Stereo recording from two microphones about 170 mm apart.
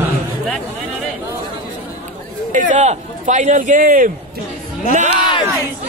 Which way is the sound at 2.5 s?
45° right (ahead or behind).